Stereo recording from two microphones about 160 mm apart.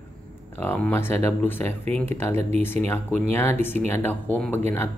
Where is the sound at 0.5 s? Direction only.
10° left (ahead or behind).